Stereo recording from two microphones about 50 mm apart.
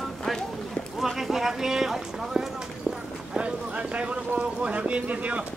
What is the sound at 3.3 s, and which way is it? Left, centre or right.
Clip-clop, right.